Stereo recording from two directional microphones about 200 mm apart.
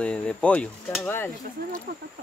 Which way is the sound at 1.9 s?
50° right (ahead or behind).